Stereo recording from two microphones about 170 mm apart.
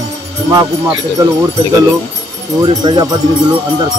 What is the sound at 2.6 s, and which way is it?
Speech, 25° right (ahead or behind).